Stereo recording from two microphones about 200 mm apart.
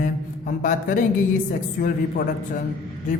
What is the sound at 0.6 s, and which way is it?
Speech, 40° left (ahead or behind).